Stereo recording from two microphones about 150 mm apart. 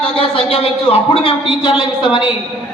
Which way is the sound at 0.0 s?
40° left (ahead or behind).